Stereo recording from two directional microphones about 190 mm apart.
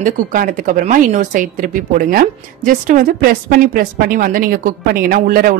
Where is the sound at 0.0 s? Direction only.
45° right (ahead or behind).